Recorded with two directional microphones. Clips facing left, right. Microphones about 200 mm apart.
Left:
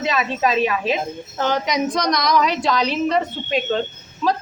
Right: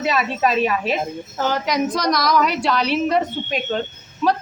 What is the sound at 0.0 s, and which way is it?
A woman's voice, 5° right (ahead or behind).